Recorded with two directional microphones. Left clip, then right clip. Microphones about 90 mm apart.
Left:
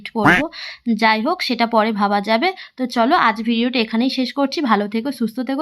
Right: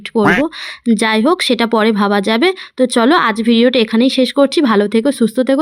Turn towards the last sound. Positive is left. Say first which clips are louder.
# right 10 dB
turn(degrees=-45)  # may be behind; listen again after turning